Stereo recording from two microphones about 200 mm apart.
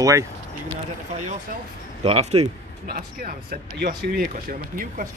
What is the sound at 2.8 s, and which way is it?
Speech, 45° right (ahead or behind).